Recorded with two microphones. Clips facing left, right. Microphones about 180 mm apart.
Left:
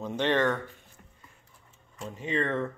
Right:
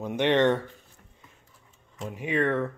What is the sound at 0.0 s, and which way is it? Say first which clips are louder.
Speech: right 4 dB; 15° right (ahead or behind).